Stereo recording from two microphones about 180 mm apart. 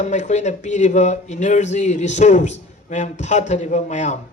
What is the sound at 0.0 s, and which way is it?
A man's voice, 40° left (ahead or behind).